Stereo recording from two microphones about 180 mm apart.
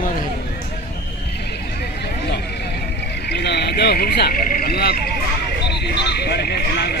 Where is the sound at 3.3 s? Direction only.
65° left (ahead or behind).